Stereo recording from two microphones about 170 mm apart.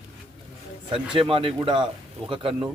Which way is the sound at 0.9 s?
30° right (ahead or behind).